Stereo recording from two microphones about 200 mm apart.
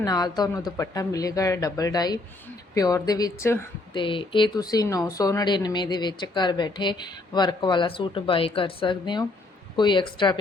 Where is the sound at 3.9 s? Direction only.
25° left (ahead or behind).